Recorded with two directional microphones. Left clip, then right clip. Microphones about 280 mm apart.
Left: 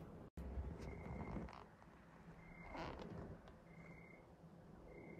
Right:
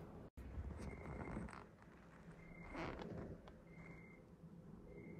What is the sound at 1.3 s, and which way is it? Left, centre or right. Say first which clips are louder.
Horse: right 1 dB; left.